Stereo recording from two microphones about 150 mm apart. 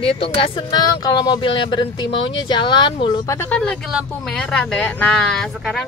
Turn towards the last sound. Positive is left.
turn(degrees=5)  # may be behind; listen again after turning